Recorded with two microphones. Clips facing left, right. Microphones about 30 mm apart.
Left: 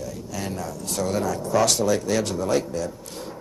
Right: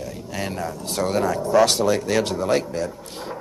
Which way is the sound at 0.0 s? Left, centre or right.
Right.